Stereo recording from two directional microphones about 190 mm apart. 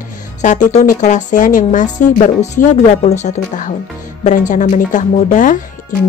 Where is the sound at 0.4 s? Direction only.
40° left (ahead or behind).